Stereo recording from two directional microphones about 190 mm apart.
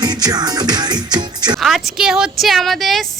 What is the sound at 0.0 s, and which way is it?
Speech, 20° right (ahead or behind).